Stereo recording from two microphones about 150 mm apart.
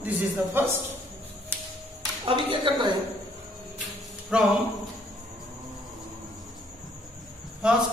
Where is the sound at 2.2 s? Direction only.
35° right (ahead or behind).